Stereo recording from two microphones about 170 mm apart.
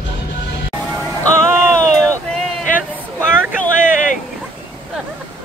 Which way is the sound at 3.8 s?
50° left (ahead or behind).